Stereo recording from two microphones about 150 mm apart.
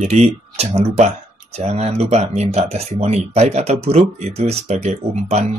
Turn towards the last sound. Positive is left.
turn(degrees=-45)  # may be behind; listen again after turning